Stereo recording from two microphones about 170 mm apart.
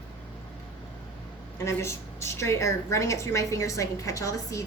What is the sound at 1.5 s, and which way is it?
A woman's voice, 15° left (ahead or behind).